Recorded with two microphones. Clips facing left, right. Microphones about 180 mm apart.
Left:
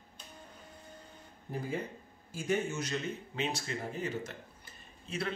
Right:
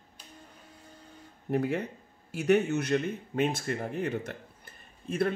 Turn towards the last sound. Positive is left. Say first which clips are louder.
# right 9 dB
turn(degrees=-55)  # may be behind; listen again after turning